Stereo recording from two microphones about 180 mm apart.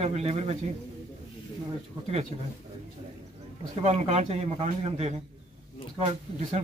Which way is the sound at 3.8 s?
40° right (ahead or behind).